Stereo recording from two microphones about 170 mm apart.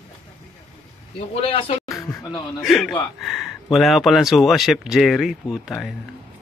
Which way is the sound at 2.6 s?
Centre (ahead or behind).